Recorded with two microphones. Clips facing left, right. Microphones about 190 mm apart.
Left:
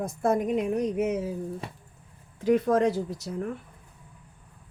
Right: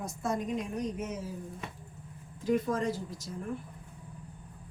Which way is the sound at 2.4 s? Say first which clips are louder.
Left 7 dB; 70° left (ahead or behind).